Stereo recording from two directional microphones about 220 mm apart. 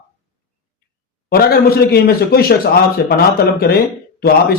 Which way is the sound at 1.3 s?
45° left (ahead or behind).